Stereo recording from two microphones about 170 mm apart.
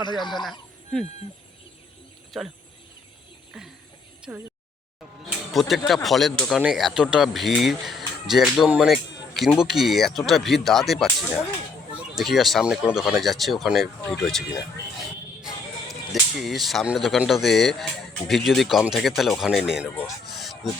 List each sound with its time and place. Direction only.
0.0 s speech: 25° left (ahead or behind)
2.3 s speech: centre (ahead or behind)
4.3 s speech: 5° right (ahead or behind)
15.4 s music: 5° right (ahead or behind)
16.3 s speech: centre (ahead or behind)
20.3 s a sound: centre (ahead or behind)